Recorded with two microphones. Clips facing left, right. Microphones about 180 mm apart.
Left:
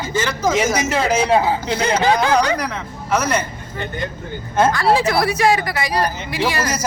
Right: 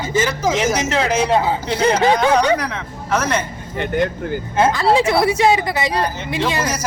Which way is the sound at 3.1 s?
Centre (ahead or behind).